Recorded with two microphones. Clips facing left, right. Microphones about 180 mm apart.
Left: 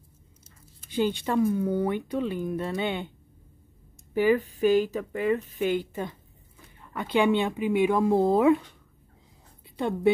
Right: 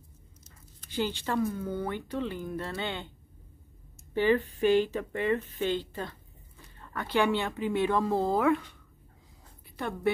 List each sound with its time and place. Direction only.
0.9 s speech: 15° left (ahead or behind)
4.1 s speech: 10° left (ahead or behind)
9.8 s a woman's voice: 20° left (ahead or behind)